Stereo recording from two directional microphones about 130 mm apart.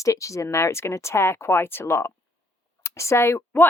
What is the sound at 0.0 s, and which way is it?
Speech, 25° left (ahead or behind).